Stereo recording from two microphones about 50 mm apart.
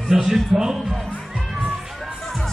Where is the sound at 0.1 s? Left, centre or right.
Centre.